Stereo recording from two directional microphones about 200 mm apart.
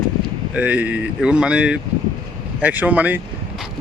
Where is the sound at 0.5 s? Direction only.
5° right (ahead or behind).